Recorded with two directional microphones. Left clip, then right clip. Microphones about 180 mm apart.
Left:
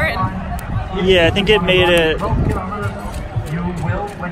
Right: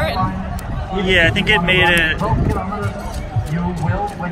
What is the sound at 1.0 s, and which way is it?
Speech, 25° left (ahead or behind).